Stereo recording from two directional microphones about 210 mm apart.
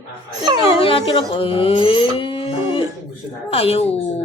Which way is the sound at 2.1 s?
25° left (ahead or behind).